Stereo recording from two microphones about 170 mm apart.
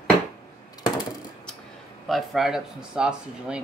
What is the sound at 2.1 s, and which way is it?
Speech, centre (ahead or behind).